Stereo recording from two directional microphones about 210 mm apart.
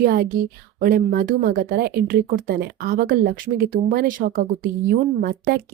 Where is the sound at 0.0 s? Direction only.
45° right (ahead or behind).